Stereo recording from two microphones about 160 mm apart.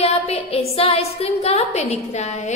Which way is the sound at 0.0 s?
35° left (ahead or behind).